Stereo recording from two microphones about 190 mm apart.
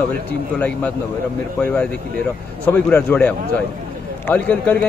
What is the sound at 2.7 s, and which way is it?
Speech, 5° left (ahead or behind).